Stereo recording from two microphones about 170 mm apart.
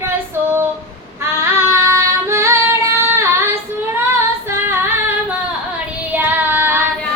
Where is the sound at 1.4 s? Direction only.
15° right (ahead or behind).